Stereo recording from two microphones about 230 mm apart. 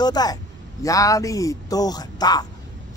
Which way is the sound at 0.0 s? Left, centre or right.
Centre.